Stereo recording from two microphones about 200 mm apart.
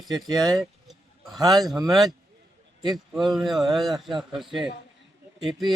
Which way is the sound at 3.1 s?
Centre (ahead or behind).